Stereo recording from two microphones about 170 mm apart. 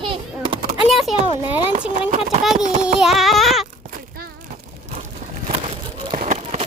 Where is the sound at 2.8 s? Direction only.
Centre (ahead or behind).